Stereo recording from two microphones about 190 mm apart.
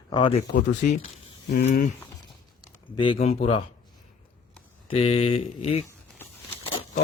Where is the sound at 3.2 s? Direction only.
30° left (ahead or behind).